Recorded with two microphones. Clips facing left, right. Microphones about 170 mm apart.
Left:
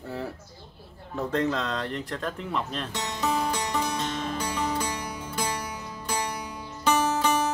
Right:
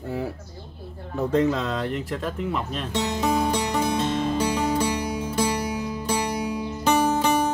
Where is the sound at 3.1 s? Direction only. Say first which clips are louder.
Right 3 dB; 15° right (ahead or behind).